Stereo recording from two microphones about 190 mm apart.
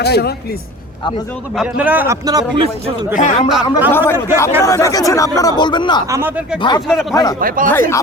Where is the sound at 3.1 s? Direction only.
40° left (ahead or behind).